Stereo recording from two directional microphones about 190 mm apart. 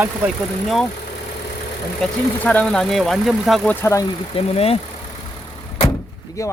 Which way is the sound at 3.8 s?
15° left (ahead or behind).